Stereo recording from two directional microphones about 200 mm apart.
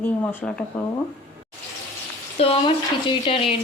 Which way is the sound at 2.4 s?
30° left (ahead or behind).